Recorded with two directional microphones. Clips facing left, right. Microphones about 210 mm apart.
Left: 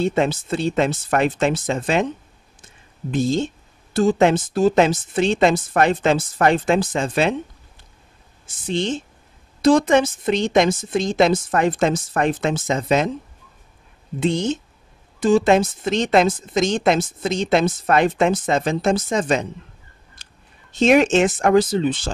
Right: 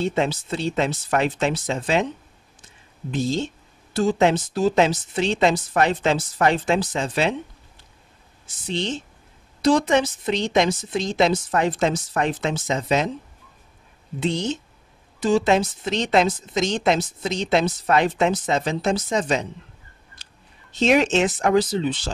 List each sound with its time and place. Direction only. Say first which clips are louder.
0.0 s speech: left 3 dB; 50° left (ahead or behind)
3.1 s speech: left 4 dB; 50° left (ahead or behind)
8.5 s speech: left 4 dB; 50° left (ahead or behind)
14.2 s speech: left 4 dB; 50° left (ahead or behind)
20.2 s a sound: left 1 dB; 50° left (ahead or behind)
20.7 s speech: left 3 dB; 50° left (ahead or behind)